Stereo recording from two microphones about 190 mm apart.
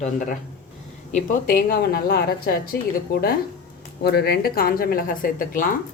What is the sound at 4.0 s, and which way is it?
A woman's voice, 60° left (ahead or behind).